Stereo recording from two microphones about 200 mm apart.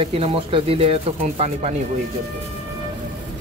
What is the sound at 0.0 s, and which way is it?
Speech, 30° right (ahead or behind).